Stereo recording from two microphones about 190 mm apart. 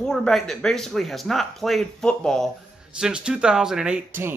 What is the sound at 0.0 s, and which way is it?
Speech, 5° left (ahead or behind).